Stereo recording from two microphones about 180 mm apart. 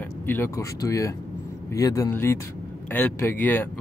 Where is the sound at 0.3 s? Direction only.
15° left (ahead or behind).